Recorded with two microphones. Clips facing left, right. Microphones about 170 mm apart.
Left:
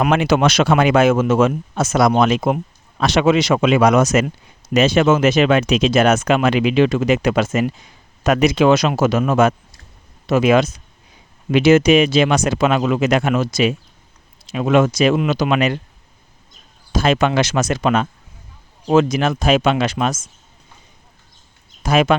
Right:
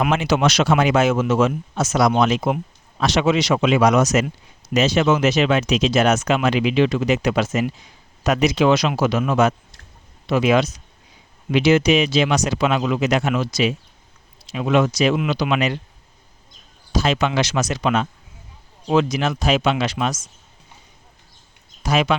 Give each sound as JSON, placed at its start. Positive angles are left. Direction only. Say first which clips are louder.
{"t": 0.1, "sound": "speech", "louder": "left 3 dB", "side_deg": 55}
{"t": 16.9, "sound": "speech", "louder": "left 4 dB", "side_deg": 50}
{"t": 21.8, "sound": "speech", "louder": "left 4 dB", "side_deg": 50}